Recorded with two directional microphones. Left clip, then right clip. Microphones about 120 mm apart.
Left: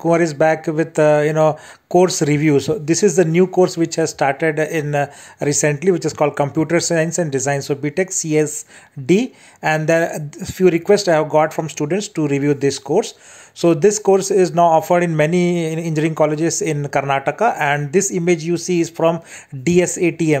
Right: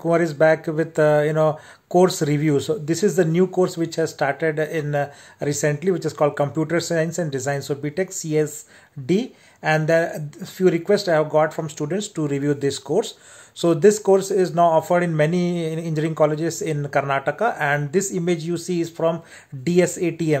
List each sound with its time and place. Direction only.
0.0 s speech: 25° left (ahead or behind)